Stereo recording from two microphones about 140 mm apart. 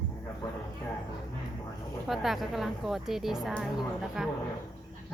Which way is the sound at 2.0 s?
Centre (ahead or behind).